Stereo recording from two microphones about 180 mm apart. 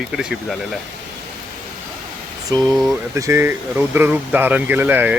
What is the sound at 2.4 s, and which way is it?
Speech, 20° right (ahead or behind).